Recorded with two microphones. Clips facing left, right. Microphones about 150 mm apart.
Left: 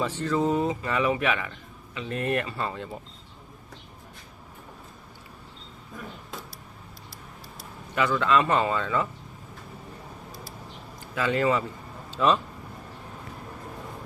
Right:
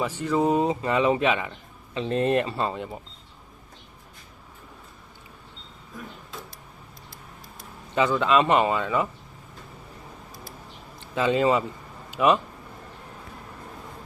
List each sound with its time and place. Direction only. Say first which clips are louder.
0.0 s speech: right 2 dB; 10° right (ahead or behind)
7.9 s speech: right 2 dB; 20° right (ahead or behind)
11.0 s speech: right 3 dB; 25° right (ahead or behind)